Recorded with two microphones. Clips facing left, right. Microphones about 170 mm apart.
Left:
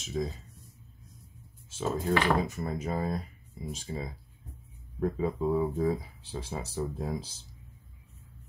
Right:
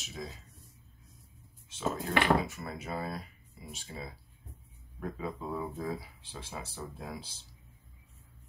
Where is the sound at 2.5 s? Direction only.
40° left (ahead or behind).